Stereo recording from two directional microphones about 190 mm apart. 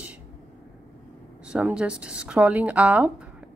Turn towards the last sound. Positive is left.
turn(degrees=-5)  # may be behind; listen again after turning